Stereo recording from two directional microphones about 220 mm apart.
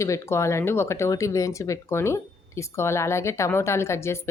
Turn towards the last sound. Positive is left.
turn(degrees=10)  # may be behind; listen again after turning